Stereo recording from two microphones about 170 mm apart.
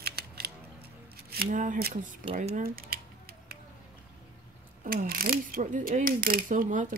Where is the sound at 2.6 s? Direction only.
60° right (ahead or behind).